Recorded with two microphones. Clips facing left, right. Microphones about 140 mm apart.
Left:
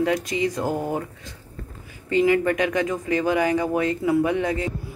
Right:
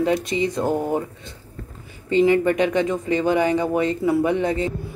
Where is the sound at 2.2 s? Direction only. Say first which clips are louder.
Right 1 dB; 5° left (ahead or behind).